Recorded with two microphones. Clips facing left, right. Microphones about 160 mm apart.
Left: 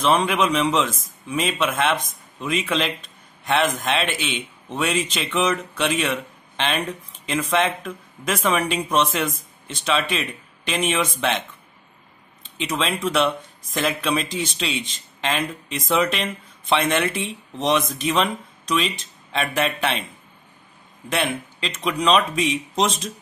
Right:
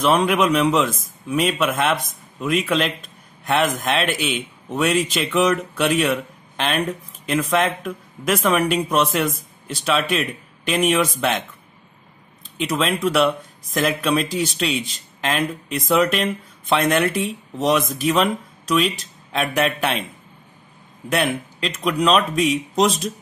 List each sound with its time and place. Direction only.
0.0 s a man's voice: 5° right (ahead or behind)
12.5 s a man's voice: centre (ahead or behind)
21.2 s a man's voice: centre (ahead or behind)